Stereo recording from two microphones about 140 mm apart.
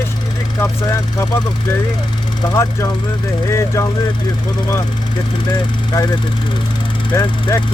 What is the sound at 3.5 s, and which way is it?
Speech, 20° left (ahead or behind).